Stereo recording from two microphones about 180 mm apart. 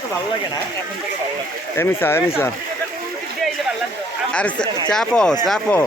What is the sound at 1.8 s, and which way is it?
Speech, 15° left (ahead or behind).